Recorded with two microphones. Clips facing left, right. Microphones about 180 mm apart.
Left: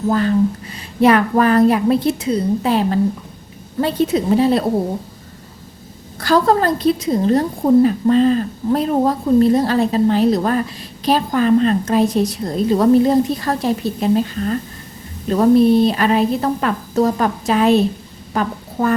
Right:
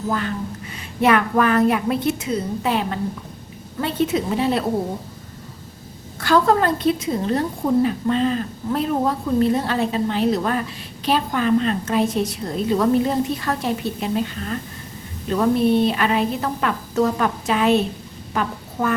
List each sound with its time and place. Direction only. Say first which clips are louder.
0.1 s a woman's voice: left 11 dB; 35° left (ahead or behind)
6.1 s a woman's voice: left 2 dB; 35° left (ahead or behind)